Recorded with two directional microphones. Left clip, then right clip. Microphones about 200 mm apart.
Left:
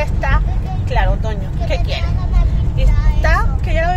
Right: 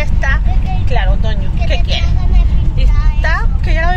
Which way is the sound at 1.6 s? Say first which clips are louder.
Right 2 dB; centre (ahead or behind).